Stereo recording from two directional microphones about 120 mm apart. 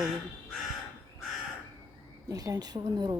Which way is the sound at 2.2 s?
30° right (ahead or behind).